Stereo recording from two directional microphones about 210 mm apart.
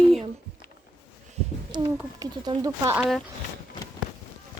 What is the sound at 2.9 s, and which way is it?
Speech, centre (ahead or behind).